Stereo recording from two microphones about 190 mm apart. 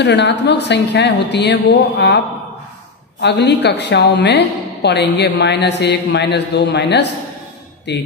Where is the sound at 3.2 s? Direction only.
65° left (ahead or behind).